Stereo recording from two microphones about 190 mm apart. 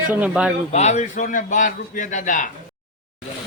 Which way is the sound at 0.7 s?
35° left (ahead or behind).